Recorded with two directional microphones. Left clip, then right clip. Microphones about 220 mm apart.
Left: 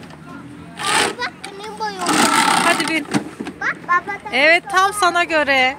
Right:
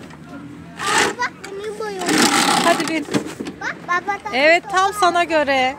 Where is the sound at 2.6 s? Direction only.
15° right (ahead or behind).